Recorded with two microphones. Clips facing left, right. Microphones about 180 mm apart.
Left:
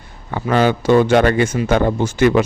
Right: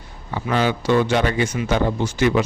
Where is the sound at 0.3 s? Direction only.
50° left (ahead or behind).